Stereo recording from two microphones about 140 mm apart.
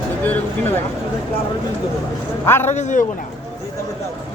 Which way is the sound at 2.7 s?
60° left (ahead or behind).